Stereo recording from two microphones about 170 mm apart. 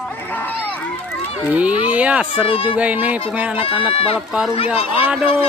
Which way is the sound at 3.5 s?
30° left (ahead or behind).